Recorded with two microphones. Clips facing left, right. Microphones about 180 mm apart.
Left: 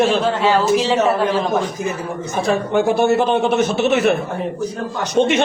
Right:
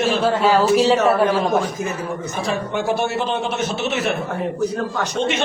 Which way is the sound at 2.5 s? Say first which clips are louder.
Left 5 dB; 55° left (ahead or behind).